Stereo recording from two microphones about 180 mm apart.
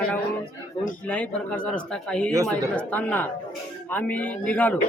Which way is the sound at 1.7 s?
5° left (ahead or behind).